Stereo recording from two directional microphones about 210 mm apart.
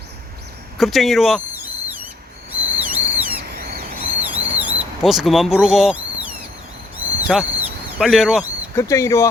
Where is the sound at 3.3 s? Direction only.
45° right (ahead or behind).